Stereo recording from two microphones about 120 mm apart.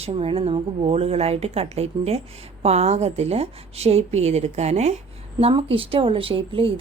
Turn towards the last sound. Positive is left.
turn(degrees=-45)  # may be behind; listen again after turning